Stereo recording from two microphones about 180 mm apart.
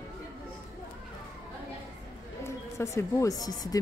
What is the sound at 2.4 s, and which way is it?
A woman's voice, 15° left (ahead or behind).